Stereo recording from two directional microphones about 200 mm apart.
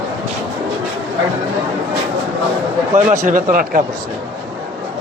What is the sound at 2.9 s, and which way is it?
Speech, 40° right (ahead or behind).